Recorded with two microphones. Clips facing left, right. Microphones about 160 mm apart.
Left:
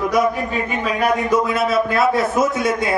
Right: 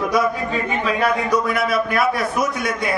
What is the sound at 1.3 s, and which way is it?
A man's voice, 25° left (ahead or behind).